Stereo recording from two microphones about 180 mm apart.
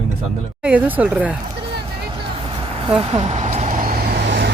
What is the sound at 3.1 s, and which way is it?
Vehicle, 40° right (ahead or behind).